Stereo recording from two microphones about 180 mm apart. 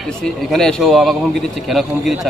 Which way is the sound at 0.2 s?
Centre (ahead or behind).